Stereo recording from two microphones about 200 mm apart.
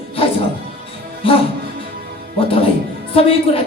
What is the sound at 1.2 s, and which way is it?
Speech, 25° left (ahead or behind).